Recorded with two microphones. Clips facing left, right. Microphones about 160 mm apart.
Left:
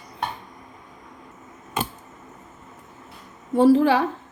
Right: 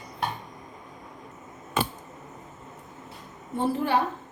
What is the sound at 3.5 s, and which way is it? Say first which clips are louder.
Speech: left 9 dB; 90° left.